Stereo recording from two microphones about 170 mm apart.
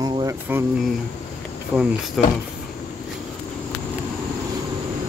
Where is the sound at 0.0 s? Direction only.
25° right (ahead or behind).